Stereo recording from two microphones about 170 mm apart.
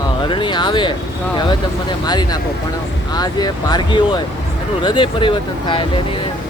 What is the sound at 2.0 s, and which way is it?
Speech, 25° left (ahead or behind).